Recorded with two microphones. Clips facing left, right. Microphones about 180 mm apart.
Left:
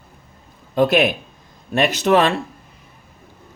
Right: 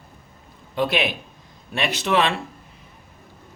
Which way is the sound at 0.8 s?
45° left (ahead or behind).